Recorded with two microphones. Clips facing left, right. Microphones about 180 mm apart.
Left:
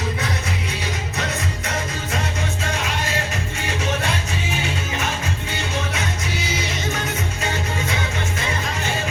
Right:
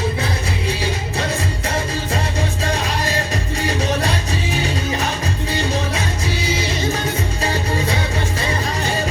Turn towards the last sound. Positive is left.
turn(degrees=-35)  # may be behind; listen again after turning